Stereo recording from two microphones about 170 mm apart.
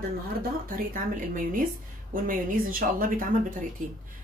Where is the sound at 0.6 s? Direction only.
55° right (ahead or behind).